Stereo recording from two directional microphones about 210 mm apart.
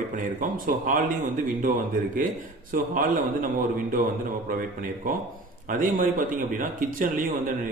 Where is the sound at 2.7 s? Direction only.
40° right (ahead or behind).